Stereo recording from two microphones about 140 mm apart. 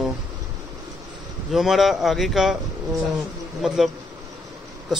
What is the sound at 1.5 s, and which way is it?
Speech, centre (ahead or behind).